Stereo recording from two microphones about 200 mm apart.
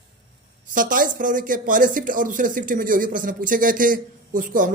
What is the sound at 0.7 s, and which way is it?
Speech, 45° right (ahead or behind).